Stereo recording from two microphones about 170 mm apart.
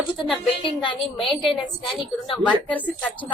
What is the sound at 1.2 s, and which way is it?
A woman's voice, centre (ahead or behind).